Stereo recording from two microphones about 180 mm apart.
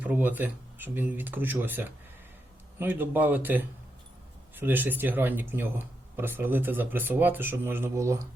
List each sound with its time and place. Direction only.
0.0 s speech: 10° right (ahead or behind)